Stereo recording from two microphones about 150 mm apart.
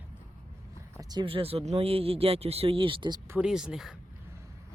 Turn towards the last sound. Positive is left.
turn(degrees=-5)  # may be behind; listen again after turning